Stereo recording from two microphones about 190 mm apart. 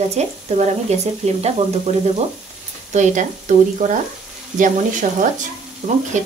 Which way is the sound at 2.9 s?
40° right (ahead or behind).